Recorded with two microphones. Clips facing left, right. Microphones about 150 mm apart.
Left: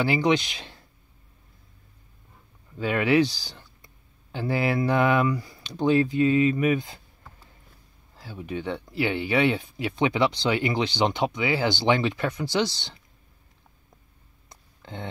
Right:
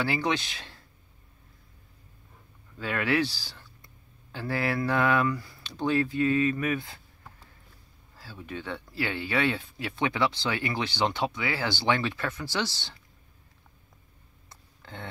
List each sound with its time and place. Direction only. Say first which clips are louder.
0.0 s speech: left 6 dB; 15° left (ahead or behind)
2.8 s speech: left 6 dB; 20° left (ahead or behind)
8.2 s speech: left 6 dB; 20° left (ahead or behind)
14.5 s a sound: left 5 dB; 20° left (ahead or behind)